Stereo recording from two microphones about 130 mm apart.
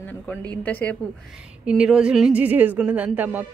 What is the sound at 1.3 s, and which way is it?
Speech, 5° right (ahead or behind).